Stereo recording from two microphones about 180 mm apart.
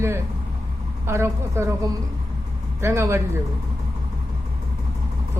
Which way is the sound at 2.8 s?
15° right (ahead or behind).